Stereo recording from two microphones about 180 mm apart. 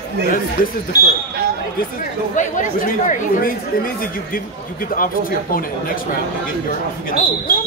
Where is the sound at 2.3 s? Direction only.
45° left (ahead or behind).